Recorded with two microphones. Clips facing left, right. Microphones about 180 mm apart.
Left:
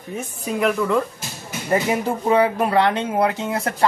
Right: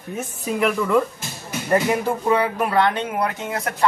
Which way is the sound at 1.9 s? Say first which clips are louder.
Left 1 dB; 25° left (ahead or behind).